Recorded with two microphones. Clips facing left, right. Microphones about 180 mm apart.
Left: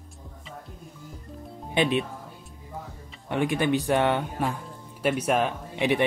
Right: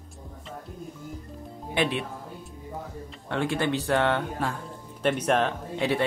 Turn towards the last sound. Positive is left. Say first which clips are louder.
# left 1 dB
turn(degrees=15)  # may be behind; listen again after turning